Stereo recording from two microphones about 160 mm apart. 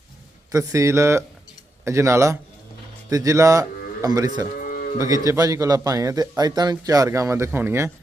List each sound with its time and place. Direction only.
0.5 s speech: 20° right (ahead or behind)
4.6 s livestock: 60° left (ahead or behind)
4.9 s a man's voice: 20° right (ahead or behind)